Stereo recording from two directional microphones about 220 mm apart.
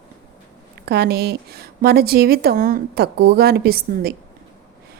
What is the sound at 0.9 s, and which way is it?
A woman's voice, 45° right (ahead or behind).